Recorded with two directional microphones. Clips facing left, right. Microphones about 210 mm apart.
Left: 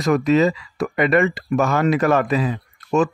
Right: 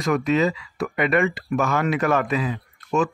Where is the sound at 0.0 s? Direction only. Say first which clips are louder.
Left 4 dB; 35° left (ahead or behind).